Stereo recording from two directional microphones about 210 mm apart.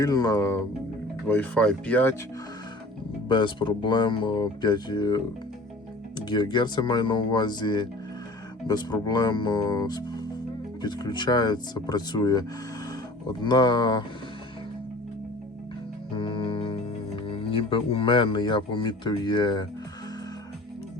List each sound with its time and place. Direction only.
0.0 s speech: 15° left (ahead or behind)
3.2 s speech: 20° left (ahead or behind)
16.1 s music: 25° left (ahead or behind)
17.2 s speech: 25° left (ahead or behind)